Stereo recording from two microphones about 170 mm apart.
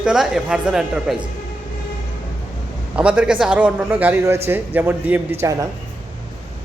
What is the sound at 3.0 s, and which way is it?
A man's voice, 5° right (ahead or behind).